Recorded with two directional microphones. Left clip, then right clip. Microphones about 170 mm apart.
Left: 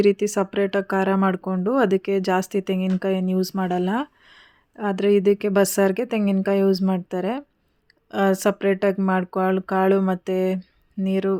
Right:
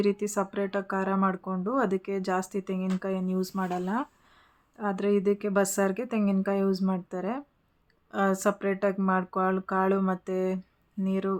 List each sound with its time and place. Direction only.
0.0 s speech: 35° left (ahead or behind)